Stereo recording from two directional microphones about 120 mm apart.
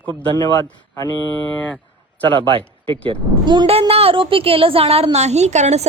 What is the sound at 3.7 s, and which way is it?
Speech, 55° right (ahead or behind).